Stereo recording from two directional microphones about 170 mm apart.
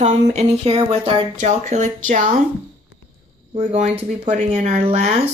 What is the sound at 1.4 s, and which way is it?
Speech, 45° right (ahead or behind).